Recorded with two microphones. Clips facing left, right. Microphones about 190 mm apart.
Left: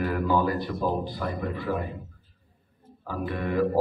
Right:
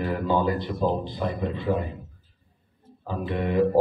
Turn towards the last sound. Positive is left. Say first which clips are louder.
# right 3 dB
turn(degrees=-20)  # may be behind; listen again after turning